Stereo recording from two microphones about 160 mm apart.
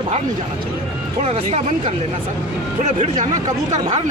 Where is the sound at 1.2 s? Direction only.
40° right (ahead or behind).